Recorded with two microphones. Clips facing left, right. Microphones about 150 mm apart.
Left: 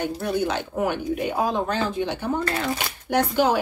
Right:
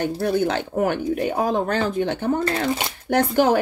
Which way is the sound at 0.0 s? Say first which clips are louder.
Right 4 dB; 55° right (ahead or behind).